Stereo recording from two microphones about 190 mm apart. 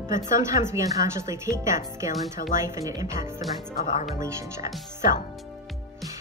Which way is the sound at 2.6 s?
15° right (ahead or behind).